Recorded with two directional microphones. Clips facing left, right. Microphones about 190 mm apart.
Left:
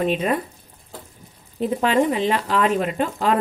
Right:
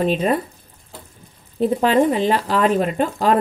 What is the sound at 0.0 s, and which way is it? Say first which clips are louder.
Speech: right 2 dB; 35° right (ahead or behind).